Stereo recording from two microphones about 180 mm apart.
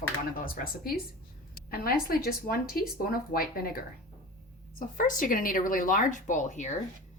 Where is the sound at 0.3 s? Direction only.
50° left (ahead or behind).